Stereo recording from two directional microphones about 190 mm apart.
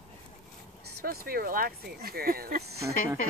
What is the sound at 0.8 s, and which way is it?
Speech, 55° right (ahead or behind).